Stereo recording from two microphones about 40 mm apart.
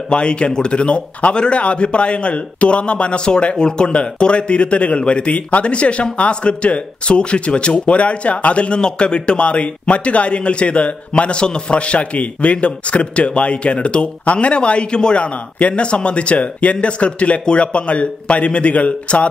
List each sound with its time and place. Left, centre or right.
0.1 s a man's voice: left